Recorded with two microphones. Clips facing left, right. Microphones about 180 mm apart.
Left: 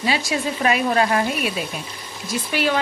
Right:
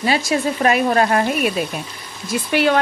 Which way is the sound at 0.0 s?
45° right (ahead or behind).